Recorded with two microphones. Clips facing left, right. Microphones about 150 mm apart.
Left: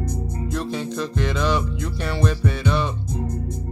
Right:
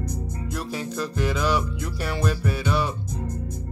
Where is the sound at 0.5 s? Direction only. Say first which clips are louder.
Left 3 dB; 5° right (ahead or behind).